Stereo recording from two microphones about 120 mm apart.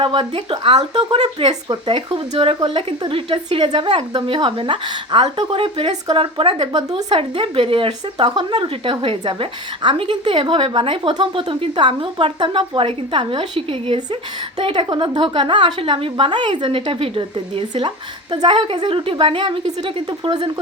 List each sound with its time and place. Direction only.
0.0 s a woman's voice: 45° right (ahead or behind)